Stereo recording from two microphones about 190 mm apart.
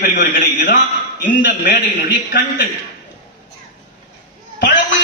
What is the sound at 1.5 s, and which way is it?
Speech, 55° left (ahead or behind).